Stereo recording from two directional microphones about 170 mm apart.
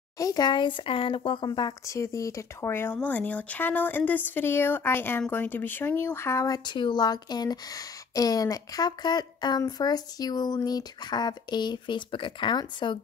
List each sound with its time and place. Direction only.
0.2 s speech: 25° left (ahead or behind)